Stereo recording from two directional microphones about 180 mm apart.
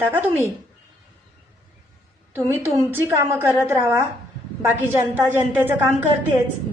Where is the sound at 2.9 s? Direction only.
10° right (ahead or behind).